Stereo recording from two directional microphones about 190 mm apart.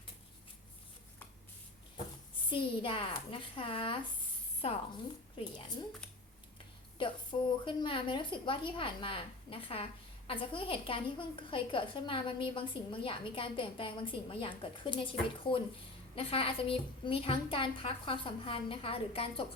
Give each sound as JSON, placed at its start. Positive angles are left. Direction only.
{"t": 2.5, "sound": "a woman's voice", "side_deg": 25}
{"t": 7.0, "sound": "a woman's voice", "side_deg": 25}